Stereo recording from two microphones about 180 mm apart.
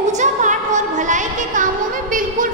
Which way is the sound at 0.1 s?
45° right (ahead or behind).